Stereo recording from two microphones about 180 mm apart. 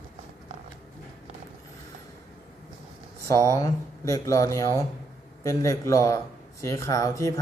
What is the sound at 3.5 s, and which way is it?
Speech, 20° left (ahead or behind).